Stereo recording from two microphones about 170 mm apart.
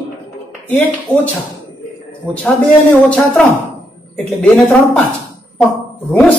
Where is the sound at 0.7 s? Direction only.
10° left (ahead or behind).